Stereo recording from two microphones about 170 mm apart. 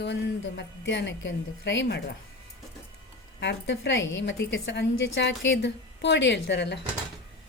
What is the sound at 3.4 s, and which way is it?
A woman's voice, 90° left.